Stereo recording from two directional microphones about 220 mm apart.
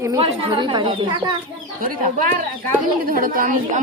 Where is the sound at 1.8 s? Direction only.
35° right (ahead or behind).